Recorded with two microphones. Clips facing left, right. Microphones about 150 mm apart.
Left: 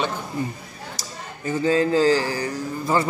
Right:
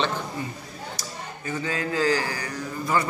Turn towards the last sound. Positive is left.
turn(degrees=25)  # may be behind; listen again after turning